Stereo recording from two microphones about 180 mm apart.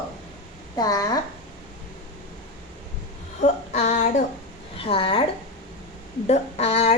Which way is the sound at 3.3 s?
40° left (ahead or behind).